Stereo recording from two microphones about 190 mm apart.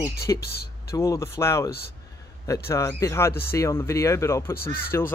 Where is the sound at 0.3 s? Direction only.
15° left (ahead or behind).